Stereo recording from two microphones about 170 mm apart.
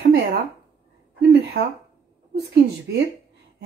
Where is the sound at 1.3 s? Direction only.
65° right (ahead or behind).